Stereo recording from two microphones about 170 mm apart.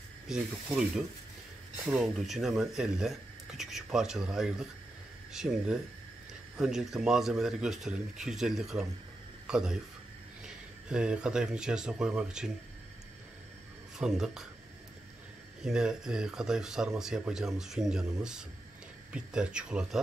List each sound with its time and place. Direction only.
0.3 s speech: 5° right (ahead or behind)
13.9 s speech: 5° right (ahead or behind)
15.6 s speech: 5° right (ahead or behind)